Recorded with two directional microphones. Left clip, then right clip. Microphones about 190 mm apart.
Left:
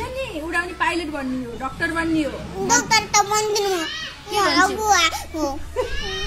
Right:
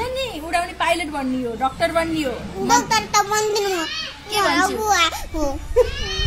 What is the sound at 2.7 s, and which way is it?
A child's voice, 20° right (ahead or behind).